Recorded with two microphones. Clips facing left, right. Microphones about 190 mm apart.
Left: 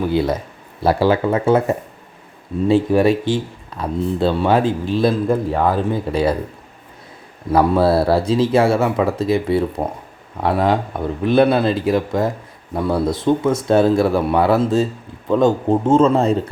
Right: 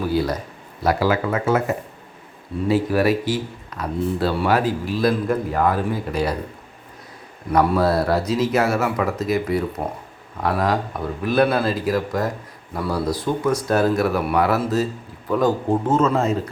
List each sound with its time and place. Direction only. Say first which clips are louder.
0.1 s speech: left 3 dB; 25° left (ahead or behind)
7.5 s speech: left 3 dB; 30° left (ahead or behind)